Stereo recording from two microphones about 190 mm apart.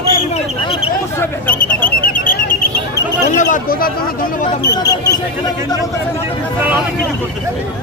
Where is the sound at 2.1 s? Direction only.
45° left (ahead or behind).